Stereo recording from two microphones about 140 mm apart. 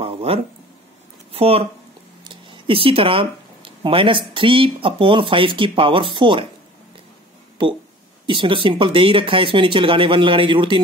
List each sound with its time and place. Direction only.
0.0 s a sound: 45° right (ahead or behind)
1.3 s speech: 45° right (ahead or behind)
7.6 s speech: 35° right (ahead or behind)